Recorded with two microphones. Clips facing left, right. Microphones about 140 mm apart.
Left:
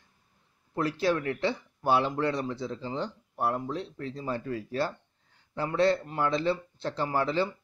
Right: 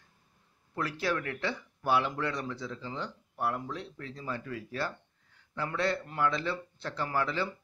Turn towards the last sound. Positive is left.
turn(degrees=30)  # may be behind; listen again after turning